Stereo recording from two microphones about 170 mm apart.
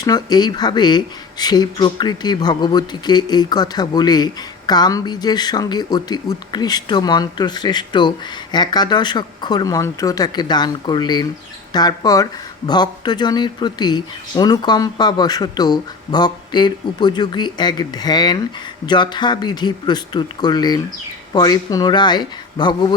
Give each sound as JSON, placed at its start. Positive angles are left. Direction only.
{"t": 0.0, "sound": "speech", "side_deg": 25}